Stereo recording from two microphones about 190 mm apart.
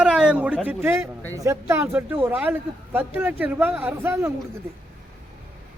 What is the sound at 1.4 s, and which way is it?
Speech, 15° right (ahead or behind).